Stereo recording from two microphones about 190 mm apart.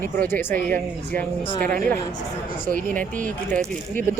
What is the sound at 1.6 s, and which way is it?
Speech, 50° right (ahead or behind).